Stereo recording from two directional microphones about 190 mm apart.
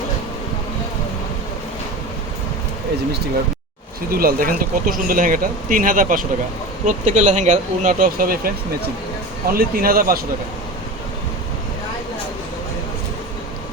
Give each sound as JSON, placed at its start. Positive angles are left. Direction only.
{"t": 4.1, "sound": "speech", "side_deg": -50}